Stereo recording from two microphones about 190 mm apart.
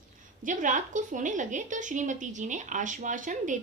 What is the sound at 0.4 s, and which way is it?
A woman's voice, 45° right (ahead or behind).